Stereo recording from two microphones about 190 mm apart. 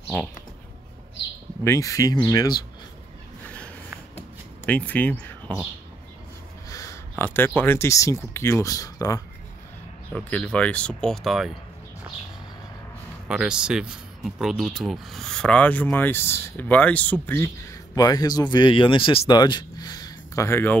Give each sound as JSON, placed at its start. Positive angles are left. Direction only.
{"t": 1.6, "sound": "speech", "side_deg": 15}
{"t": 3.4, "sound": "a sound", "side_deg": 5}
{"t": 4.6, "sound": "speech", "side_deg": 10}
{"t": 6.7, "sound": "speech", "side_deg": 15}
{"t": 10.1, "sound": "speech", "side_deg": 5}
{"t": 13.3, "sound": "speech", "side_deg": -5}